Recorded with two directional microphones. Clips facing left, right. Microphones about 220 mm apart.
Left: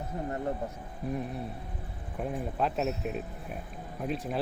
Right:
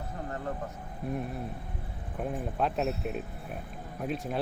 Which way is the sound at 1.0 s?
Centre (ahead or behind).